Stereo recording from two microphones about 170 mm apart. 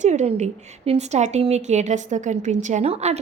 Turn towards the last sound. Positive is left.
turn(degrees=-40)  # may be behind; listen again after turning